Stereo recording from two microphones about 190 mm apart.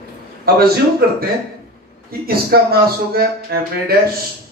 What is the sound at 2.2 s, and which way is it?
Speech, 55° right (ahead or behind).